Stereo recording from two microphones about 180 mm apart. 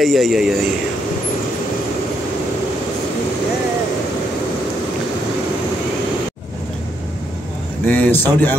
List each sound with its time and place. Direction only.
0.0 s speech: centre (ahead or behind)
7.8 s a man's voice: 10° left (ahead or behind)